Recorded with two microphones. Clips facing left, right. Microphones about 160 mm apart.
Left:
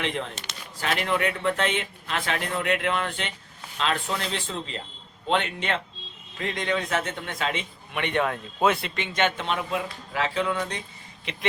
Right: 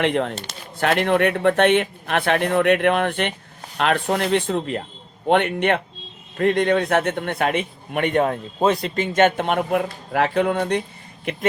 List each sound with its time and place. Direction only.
0.0 s a man's voice: 60° right (ahead or behind)